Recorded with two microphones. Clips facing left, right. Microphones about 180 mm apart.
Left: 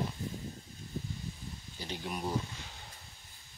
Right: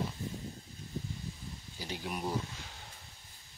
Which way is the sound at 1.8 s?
5° right (ahead or behind).